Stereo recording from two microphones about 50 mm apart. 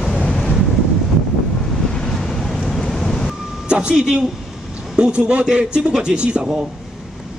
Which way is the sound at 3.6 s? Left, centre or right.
Centre.